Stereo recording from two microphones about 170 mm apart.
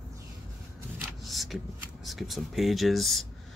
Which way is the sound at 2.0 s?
Centre (ahead or behind).